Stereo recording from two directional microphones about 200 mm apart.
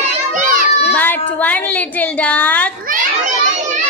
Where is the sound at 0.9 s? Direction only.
10° left (ahead or behind).